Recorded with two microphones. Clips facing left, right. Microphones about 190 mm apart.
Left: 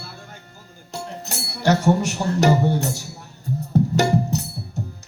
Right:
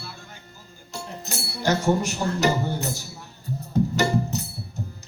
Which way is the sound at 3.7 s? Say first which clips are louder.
Left 3 dB; 70° left (ahead or behind).